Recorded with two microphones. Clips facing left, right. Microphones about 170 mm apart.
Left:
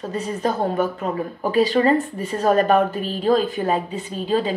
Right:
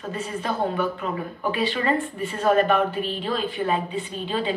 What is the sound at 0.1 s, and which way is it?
A woman's voice, 40° left (ahead or behind).